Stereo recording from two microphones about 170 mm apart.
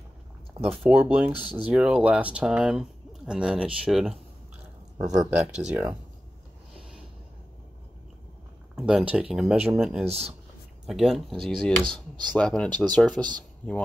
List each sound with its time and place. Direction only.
0.7 s speech: 10° right (ahead or behind)
4.9 s speech: 20° right (ahead or behind)
5.3 s speech: 5° right (ahead or behind)
8.7 s speech: 5° right (ahead or behind)